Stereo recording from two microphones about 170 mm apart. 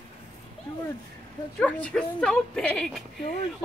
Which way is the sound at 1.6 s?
5° left (ahead or behind).